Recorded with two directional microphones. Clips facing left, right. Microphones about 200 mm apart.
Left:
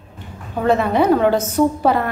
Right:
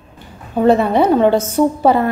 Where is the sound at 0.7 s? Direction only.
30° right (ahead or behind).